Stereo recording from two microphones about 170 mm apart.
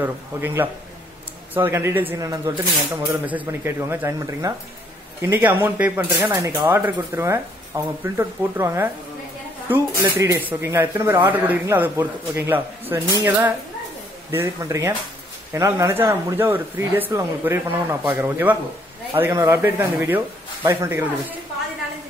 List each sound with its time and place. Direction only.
0.0 s speech: 10° right (ahead or behind)
1.7 s speech: 15° right (ahead or behind)
6.3 s speech: 20° right (ahead or behind)
10.1 s speech: 15° right (ahead or behind)